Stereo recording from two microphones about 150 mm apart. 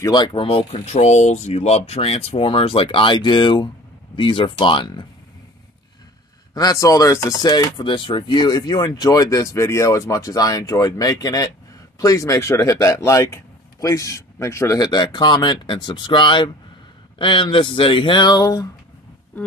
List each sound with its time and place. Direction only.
0.0 s speech: 30° left (ahead or behind)
6.5 s speech: 25° left (ahead or behind)